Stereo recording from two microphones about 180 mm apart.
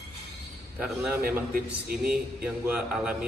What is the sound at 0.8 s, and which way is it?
Speech, 5° right (ahead or behind).